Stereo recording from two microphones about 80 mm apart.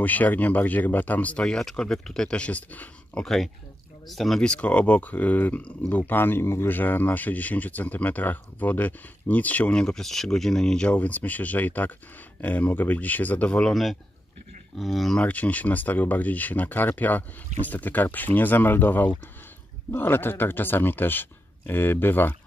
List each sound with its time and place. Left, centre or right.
0.0 s speech: left
1.4 s speech: centre
4.1 s speech: centre
14.8 s speech: centre
15.2 s speech: centre